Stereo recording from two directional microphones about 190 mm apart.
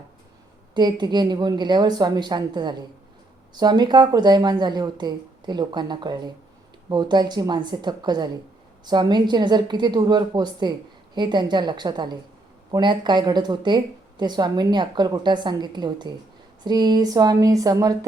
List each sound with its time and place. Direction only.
0.7 s a woman's voice: 25° right (ahead or behind)